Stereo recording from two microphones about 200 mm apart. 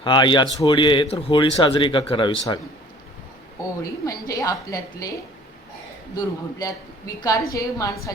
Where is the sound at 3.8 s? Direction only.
15° left (ahead or behind).